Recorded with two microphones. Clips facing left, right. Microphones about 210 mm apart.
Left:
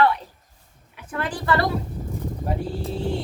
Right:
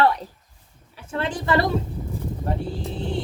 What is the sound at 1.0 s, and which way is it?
Speech, 25° right (ahead or behind).